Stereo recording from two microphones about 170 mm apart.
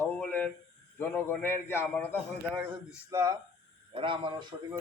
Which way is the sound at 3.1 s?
20° right (ahead or behind).